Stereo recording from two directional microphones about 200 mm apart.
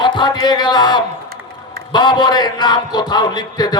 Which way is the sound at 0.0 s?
20° left (ahead or behind).